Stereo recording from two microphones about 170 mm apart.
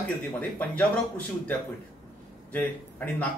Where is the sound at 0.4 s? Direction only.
10° left (ahead or behind).